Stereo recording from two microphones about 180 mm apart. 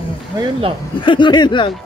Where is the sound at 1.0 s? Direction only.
25° left (ahead or behind).